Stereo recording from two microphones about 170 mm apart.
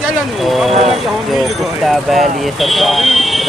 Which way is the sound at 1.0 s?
Centre (ahead or behind).